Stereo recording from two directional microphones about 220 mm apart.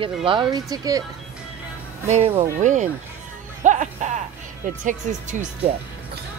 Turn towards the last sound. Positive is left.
turn(degrees=-35)  # may be behind; listen again after turning